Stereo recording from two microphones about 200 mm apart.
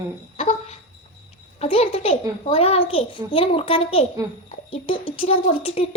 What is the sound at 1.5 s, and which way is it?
A child's voice, 30° left (ahead or behind).